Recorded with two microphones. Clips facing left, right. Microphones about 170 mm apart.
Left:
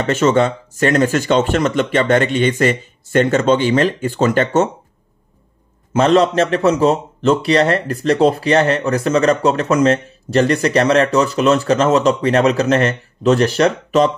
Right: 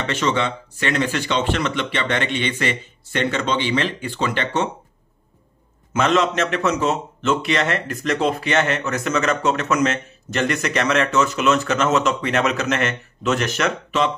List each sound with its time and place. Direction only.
0.0 s speech: 45° left (ahead or behind)
5.9 s a man's voice: 35° left (ahead or behind)